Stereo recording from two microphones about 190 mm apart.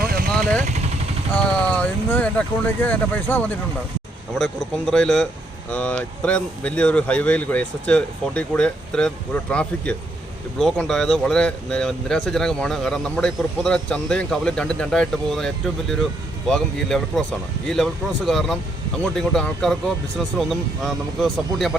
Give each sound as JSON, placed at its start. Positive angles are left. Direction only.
{"t": 0.0, "sound": "vehicle", "side_deg": -50}
{"t": 1.4, "sound": "speech", "side_deg": 5}
{"t": 18.3, "sound": "speech", "side_deg": 0}